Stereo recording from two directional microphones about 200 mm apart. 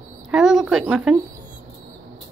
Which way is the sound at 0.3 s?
Centre (ahead or behind).